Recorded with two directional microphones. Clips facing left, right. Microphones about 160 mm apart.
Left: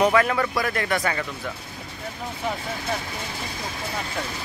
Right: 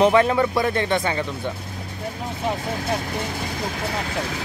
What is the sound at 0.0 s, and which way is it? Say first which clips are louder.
Speech: right 4 dB; 25° right (ahead or behind).